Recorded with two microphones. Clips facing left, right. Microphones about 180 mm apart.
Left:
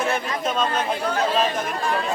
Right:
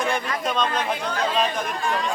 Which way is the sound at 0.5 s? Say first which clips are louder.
Left 1 dB; 5° left (ahead or behind).